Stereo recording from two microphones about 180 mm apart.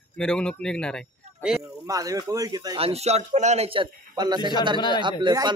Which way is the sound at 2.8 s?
35° right (ahead or behind).